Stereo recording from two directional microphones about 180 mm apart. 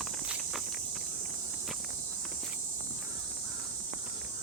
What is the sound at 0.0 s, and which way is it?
Cricket, centre (ahead or behind).